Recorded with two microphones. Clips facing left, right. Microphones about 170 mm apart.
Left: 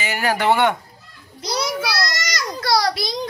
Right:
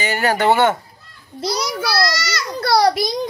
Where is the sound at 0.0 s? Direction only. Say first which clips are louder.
Right 3 dB; centre (ahead or behind).